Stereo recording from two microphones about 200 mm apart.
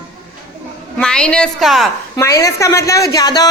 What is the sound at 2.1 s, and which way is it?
A woman's voice, 15° left (ahead or behind).